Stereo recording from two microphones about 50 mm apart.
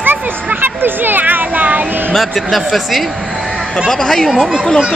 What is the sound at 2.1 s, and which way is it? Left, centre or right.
A man's voice, centre.